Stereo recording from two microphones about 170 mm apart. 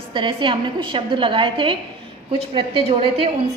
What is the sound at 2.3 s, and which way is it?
A woman's voice, 30° right (ahead or behind).